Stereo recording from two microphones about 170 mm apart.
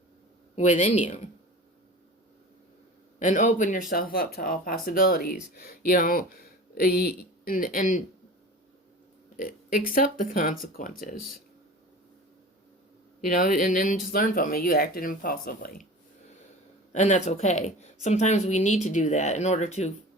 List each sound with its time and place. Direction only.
0.5 s a woman's voice: 45° left (ahead or behind)
3.2 s speech: 45° left (ahead or behind)
9.4 s a woman's voice: 55° left (ahead or behind)
13.2 s speech: 55° left (ahead or behind)
16.9 s a woman's voice: 45° left (ahead or behind)